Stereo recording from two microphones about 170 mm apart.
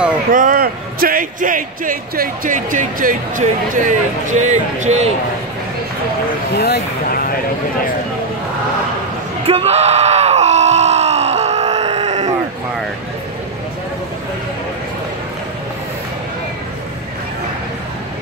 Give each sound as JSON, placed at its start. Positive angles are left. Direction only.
{"t": 0.3, "sound": "speech", "side_deg": -55}
{"t": 6.5, "sound": "speech", "side_deg": 70}
{"t": 9.5, "sound": "groan", "side_deg": -35}